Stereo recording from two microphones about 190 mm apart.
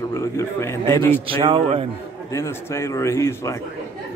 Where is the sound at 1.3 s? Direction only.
30° right (ahead or behind).